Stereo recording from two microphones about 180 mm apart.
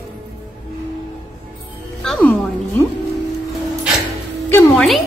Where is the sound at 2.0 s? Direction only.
5° left (ahead or behind).